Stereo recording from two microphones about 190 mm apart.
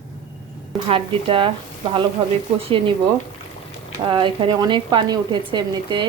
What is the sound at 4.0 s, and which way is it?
A woman's voice, 25° right (ahead or behind).